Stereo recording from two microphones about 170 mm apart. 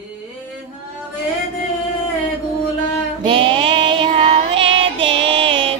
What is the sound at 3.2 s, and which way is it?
Music, 30° right (ahead or behind).